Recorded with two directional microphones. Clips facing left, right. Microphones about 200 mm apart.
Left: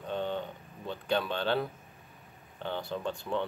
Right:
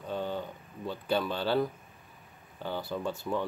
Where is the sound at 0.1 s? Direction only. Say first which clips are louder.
Left 1 dB; 5° right (ahead or behind).